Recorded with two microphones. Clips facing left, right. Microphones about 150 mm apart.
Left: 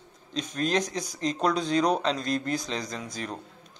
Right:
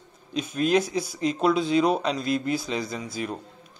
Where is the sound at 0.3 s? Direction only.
10° right (ahead or behind).